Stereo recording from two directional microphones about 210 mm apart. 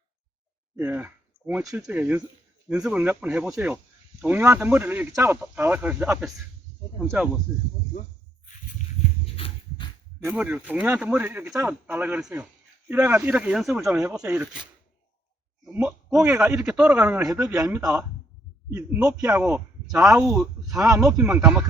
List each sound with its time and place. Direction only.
0.8 s speech: 10° right (ahead or behind)
9.3 s a sound: 25° left (ahead or behind)
10.2 s speech: 5° right (ahead or behind)
15.6 s speech: 5° right (ahead or behind)
17.2 s speech: 15° right (ahead or behind)